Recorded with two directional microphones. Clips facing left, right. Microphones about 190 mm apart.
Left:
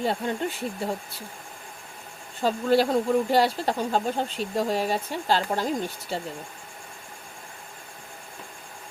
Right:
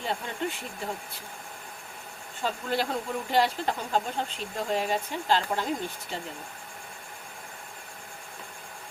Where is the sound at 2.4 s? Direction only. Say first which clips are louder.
Left 8 dB; 35° left (ahead or behind).